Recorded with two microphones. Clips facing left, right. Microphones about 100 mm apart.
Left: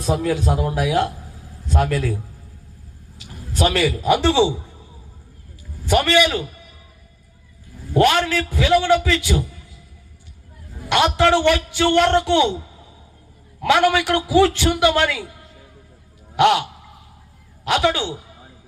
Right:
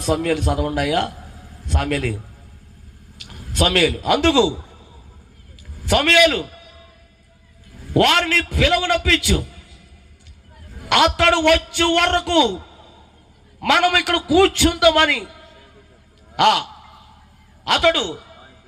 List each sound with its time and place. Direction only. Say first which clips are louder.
0.0 s a man's voice: right 1 dB; 65° right (ahead or behind)
3.2 s speech: even; 65° right (ahead or behind)
5.9 s a man's voice: right 1 dB; 65° right (ahead or behind)
7.9 s a man's voice: even; 60° right (ahead or behind)
10.8 s a man's voice: right 1 dB; 65° right (ahead or behind)
13.6 s a man's voice: left 1 dB; 60° right (ahead or behind)
16.3 s speech: left 1 dB; 55° right (ahead or behind)
17.7 s a man's voice: right 1 dB; 55° right (ahead or behind)